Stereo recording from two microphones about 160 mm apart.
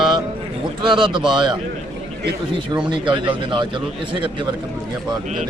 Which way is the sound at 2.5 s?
30° right (ahead or behind).